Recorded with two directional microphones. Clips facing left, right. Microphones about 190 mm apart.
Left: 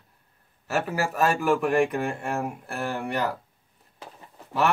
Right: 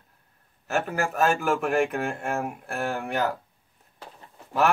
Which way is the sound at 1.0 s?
Centre (ahead or behind).